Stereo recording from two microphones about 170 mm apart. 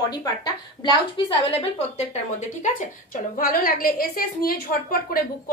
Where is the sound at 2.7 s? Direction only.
50° left (ahead or behind).